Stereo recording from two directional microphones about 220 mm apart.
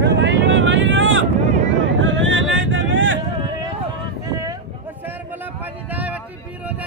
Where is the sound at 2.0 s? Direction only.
60° right (ahead or behind).